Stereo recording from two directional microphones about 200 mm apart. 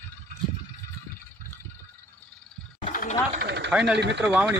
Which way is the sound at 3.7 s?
5° right (ahead or behind).